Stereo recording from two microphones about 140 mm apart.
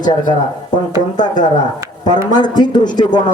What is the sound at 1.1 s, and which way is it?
A man's voice, 30° left (ahead or behind).